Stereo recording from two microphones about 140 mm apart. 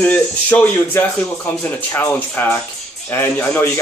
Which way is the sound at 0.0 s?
10° left (ahead or behind).